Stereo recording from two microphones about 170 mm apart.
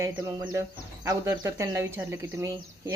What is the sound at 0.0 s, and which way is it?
Speech, 20° right (ahead or behind).